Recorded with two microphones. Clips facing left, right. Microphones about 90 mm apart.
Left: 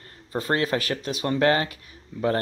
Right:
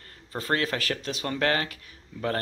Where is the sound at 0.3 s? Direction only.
25° left (ahead or behind).